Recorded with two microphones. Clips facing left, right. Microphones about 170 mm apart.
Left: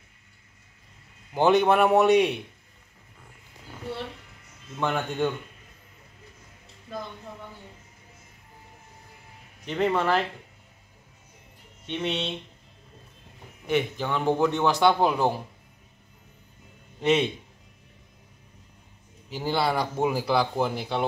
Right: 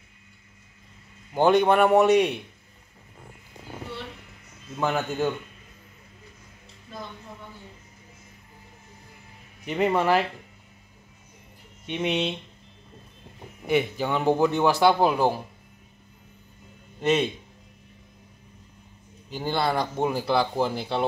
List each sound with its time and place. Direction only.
1.3 s a man's voice: centre (ahead or behind)
4.7 s a man's voice: 5° right (ahead or behind)
9.7 s a man's voice: 10° right (ahead or behind)
11.8 s a man's voice: 10° right (ahead or behind)
13.7 s a man's voice: 10° right (ahead or behind)
17.0 s a man's voice: centre (ahead or behind)
19.2 s a man's voice: 5° left (ahead or behind)